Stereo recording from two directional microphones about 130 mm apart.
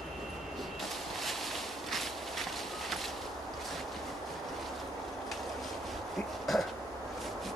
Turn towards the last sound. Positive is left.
turn(degrees=0)  # may be behind; listen again after turning